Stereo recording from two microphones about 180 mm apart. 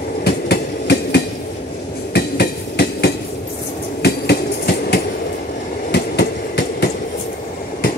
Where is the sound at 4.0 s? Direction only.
65° left (ahead or behind).